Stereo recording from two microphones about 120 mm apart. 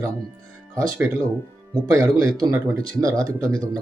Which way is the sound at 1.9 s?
25° right (ahead or behind).